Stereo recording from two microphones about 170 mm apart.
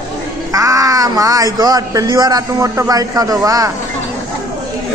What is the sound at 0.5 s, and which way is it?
Speech, 20° right (ahead or behind).